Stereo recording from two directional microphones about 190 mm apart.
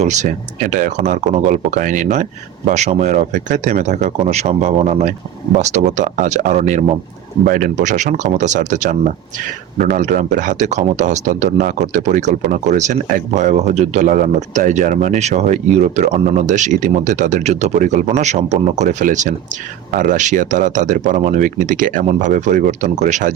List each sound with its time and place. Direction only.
0.0 s speech: 40° right (ahead or behind)